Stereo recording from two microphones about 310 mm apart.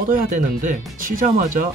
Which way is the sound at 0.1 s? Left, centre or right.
Right.